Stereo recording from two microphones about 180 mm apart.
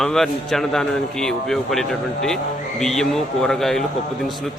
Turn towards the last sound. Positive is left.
turn(degrees=0)  # may be behind; listen again after turning